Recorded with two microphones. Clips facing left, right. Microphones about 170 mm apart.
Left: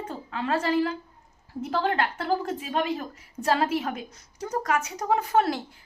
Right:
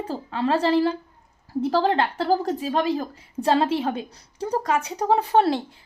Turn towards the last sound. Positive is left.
turn(degrees=-30)  # may be behind; listen again after turning